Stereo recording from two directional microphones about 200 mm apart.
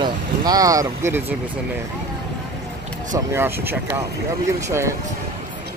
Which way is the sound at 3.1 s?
10° right (ahead or behind).